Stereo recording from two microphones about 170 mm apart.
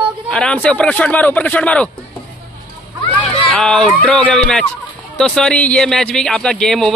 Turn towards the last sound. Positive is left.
turn(degrees=5)  # may be behind; listen again after turning